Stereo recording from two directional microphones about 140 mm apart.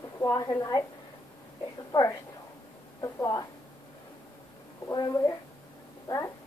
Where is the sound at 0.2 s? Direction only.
25° left (ahead or behind).